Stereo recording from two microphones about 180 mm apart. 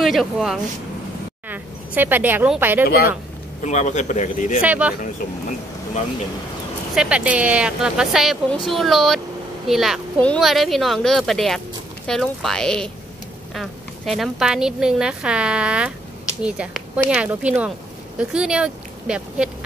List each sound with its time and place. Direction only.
0.0 s speech: centre (ahead or behind)
2.8 s speech: 55° left (ahead or behind)
3.6 s speech: 40° left (ahead or behind)
4.6 s speech: 5° right (ahead or behind)
7.0 s speech: 5° right (ahead or behind)